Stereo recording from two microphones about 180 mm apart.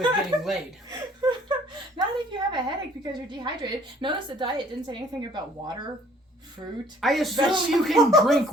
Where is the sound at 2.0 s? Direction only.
25° right (ahead or behind).